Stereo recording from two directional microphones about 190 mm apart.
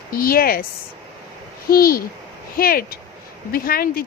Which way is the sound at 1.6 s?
50° left (ahead or behind).